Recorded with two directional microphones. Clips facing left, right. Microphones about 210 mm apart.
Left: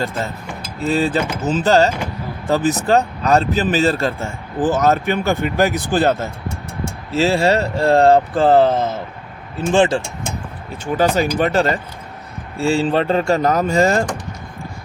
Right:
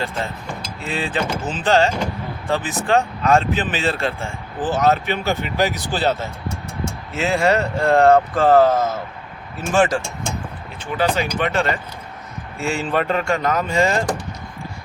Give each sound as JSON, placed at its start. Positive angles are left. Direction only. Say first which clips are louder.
{"t": 0.8, "sound": "speech", "louder": "left 7 dB", "side_deg": 40}
{"t": 7.1, "sound": "speech", "louder": "left 3 dB", "side_deg": 35}
{"t": 10.9, "sound": "speech", "louder": "left 4 dB", "side_deg": 45}